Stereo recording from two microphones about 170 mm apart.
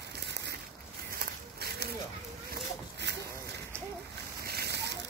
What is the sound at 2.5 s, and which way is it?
Boat, 90° right.